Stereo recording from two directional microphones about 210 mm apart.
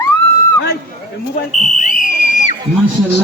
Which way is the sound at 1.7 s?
35° left (ahead or behind).